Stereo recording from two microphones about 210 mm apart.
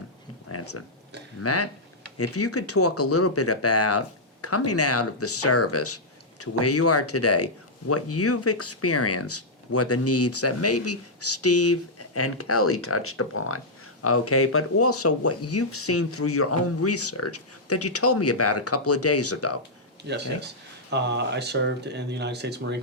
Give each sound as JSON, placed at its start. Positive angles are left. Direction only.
{"t": 0.4, "sound": "a sound", "side_deg": 90}
{"t": 1.4, "sound": "speech", "side_deg": 90}
{"t": 20.9, "sound": "speech", "side_deg": -55}